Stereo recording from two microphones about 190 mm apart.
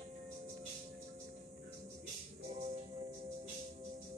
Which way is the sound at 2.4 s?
35° right (ahead or behind).